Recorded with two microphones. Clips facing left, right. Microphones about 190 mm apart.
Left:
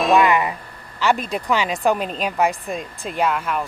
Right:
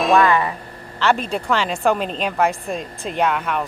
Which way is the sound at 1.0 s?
10° left (ahead or behind).